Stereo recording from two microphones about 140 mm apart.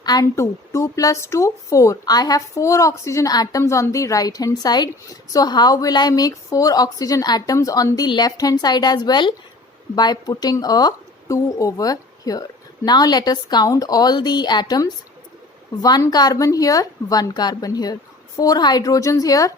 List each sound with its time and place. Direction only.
0.0 s a woman's voice: 25° left (ahead or behind)